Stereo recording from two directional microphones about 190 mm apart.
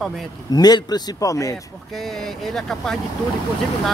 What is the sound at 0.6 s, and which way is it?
Speech, 20° left (ahead or behind).